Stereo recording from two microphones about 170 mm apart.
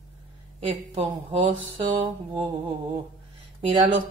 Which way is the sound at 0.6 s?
30° right (ahead or behind).